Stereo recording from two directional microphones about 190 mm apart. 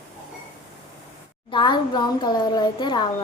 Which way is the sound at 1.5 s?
25° left (ahead or behind).